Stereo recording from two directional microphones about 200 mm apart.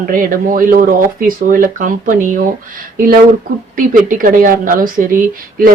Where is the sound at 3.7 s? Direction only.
45° right (ahead or behind).